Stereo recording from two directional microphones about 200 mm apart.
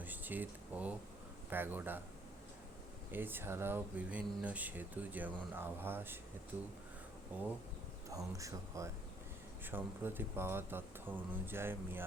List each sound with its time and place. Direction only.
0.0 s a sound: 10° right (ahead or behind)
1.5 s speech: 10° right (ahead or behind)
3.1 s speech: 10° right (ahead or behind)
7.3 s speech: 10° right (ahead or behind)